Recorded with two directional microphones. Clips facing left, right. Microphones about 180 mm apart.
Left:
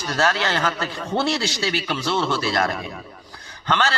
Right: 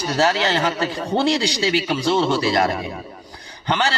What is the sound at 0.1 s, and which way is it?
A man's voice, 20° right (ahead or behind).